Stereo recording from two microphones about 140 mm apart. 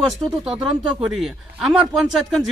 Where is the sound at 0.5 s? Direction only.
5° right (ahead or behind).